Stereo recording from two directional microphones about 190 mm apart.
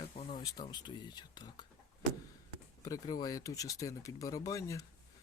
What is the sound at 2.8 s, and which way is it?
Speech, 20° left (ahead or behind).